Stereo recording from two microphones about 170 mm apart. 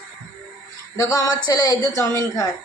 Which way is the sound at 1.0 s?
20° left (ahead or behind).